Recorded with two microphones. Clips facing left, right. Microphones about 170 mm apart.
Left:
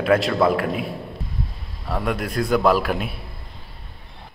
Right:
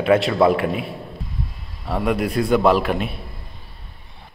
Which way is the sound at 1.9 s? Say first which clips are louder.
Right 4 dB; 5° right (ahead or behind).